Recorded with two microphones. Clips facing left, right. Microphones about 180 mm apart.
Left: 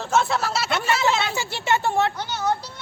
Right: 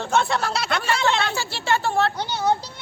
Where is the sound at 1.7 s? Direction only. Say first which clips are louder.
Even; 15° left (ahead or behind).